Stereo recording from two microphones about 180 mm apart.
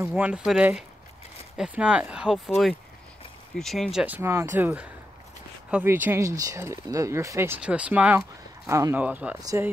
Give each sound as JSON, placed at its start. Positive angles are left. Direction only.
{"t": 0.0, "sound": "speech", "side_deg": -5}
{"t": 9.4, "sound": "speech", "side_deg": -20}